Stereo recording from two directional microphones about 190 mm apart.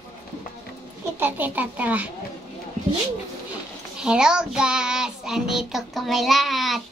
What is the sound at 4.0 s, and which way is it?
Child singing, 5° right (ahead or behind).